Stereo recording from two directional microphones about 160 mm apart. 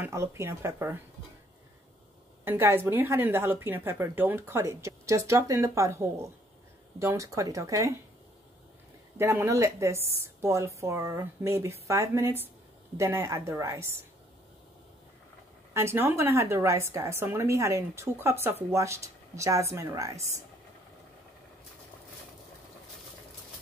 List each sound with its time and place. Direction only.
0.0 s a woman's voice: 15° right (ahead or behind)
2.4 s a woman's voice: 15° right (ahead or behind)
9.2 s a woman's voice: 15° right (ahead or behind)
15.7 s a woman's voice: 15° right (ahead or behind)